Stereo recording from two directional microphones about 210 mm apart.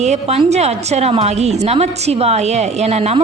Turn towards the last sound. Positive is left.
turn(degrees=-30)  # may be behind; listen again after turning